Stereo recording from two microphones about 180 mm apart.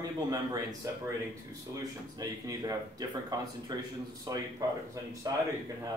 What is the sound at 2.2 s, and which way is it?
A man's voice, 20° right (ahead or behind).